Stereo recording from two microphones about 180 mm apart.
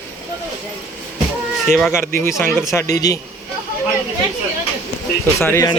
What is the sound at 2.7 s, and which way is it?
Speech, 15° left (ahead or behind).